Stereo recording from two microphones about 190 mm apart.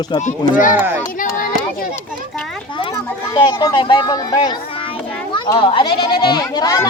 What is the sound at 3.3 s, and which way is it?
Speech, 25° left (ahead or behind).